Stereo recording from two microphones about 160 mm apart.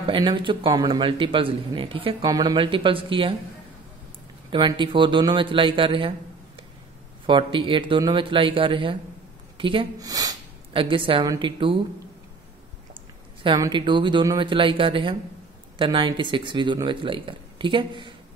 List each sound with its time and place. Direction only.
0.1 s speech: 30° right (ahead or behind)
4.5 s speech: 30° right (ahead or behind)
7.2 s a woman's voice: 30° right (ahead or behind)
13.6 s speech: 30° right (ahead or behind)